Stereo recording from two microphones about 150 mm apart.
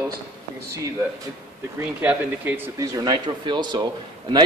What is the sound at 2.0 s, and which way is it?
Speech, 10° right (ahead or behind).